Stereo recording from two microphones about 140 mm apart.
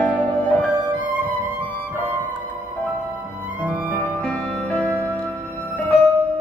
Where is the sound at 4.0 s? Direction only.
10° left (ahead or behind).